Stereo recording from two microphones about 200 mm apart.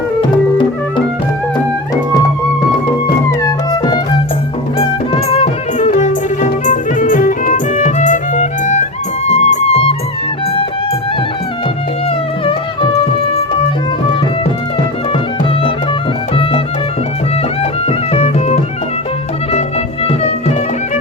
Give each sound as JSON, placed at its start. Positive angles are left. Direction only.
{"t": 0.2, "sound": "music", "side_deg": 25}
{"t": 3.7, "sound": "music", "side_deg": 20}
{"t": 5.3, "sound": "music", "side_deg": 30}
{"t": 12.5, "sound": "music", "side_deg": 30}
{"t": 17.6, "sound": "music", "side_deg": 30}